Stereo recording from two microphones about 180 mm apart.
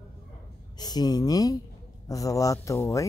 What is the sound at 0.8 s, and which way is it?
Speech, 20° left (ahead or behind).